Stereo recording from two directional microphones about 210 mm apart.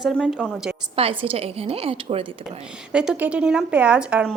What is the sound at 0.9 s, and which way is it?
A woman's voice, 25° right (ahead or behind).